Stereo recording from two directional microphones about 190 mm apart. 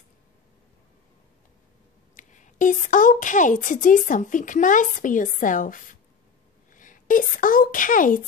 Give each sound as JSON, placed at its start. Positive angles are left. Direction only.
{"t": 2.1, "sound": "a woman's voice", "side_deg": 40}